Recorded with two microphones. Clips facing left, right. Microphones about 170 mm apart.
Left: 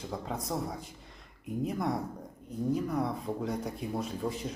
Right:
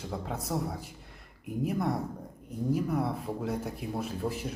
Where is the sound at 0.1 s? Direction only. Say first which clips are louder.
Right 2 dB; 5° right (ahead or behind).